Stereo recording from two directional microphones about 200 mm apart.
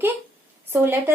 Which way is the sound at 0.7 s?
10° right (ahead or behind).